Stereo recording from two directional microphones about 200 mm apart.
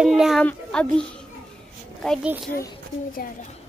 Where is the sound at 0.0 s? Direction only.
Centre (ahead or behind).